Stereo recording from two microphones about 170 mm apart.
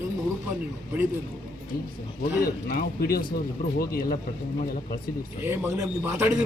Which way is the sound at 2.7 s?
60° left (ahead or behind).